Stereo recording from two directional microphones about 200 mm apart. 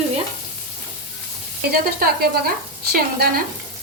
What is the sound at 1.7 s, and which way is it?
Frying, 50° right (ahead or behind).